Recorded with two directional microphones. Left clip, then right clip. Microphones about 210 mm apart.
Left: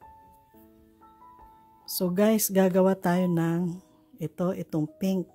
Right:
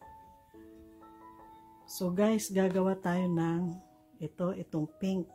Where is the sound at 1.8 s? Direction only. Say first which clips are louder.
Left 6 dB; 50° left (ahead or behind).